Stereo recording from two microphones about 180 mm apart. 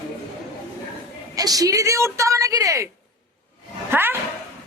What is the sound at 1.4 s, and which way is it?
Speech, 20° right (ahead or behind).